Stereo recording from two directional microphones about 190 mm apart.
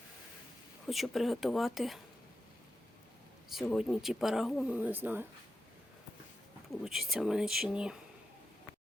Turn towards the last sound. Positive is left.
turn(degrees=-5)  # may be behind; listen again after turning